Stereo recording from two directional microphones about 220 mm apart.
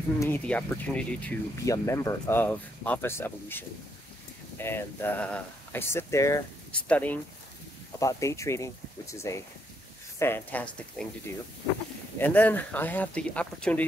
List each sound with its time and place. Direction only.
0.2 s speech: 10° left (ahead or behind)
12.2 s speech: 5° left (ahead or behind)